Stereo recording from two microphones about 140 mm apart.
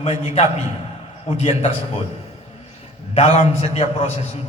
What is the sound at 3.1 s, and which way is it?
A man's voice, 45° left (ahead or behind).